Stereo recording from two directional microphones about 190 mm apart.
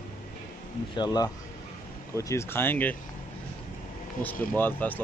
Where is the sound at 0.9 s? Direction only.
20° left (ahead or behind).